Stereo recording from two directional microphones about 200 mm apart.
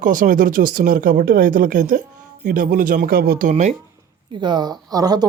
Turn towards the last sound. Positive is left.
turn(degrees=-20)  # may be behind; listen again after turning